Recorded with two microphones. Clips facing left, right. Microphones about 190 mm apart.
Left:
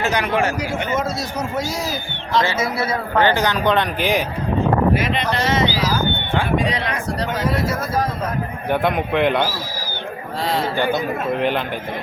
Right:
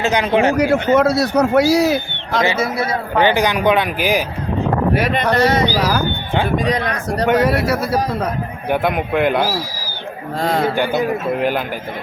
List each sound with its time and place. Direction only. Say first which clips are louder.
0.0 s a man's voice: right 4 dB; 20° right (ahead or behind)
0.5 s a man's voice: right 9 dB; 65° right (ahead or behind)
3.2 s speech: right 3 dB; 15° right (ahead or behind)
4.9 s speech: right 5 dB; 60° right (ahead or behind); by 7.3 s 45° right (ahead or behind)
7.3 s a man's voice: right 8 dB; 65° right (ahead or behind)
8.7 s a man's voice: right 1 dB; 5° right (ahead or behind)
10.4 s speech: right 4 dB; 45° right (ahead or behind)
10.8 s a man's voice: right 2 dB; 5° right (ahead or behind)